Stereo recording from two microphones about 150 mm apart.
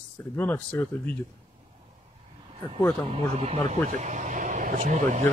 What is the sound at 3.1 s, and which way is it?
Speech, 45° right (ahead or behind).